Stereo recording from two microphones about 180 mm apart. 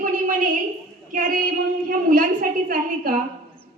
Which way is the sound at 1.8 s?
50° right (ahead or behind).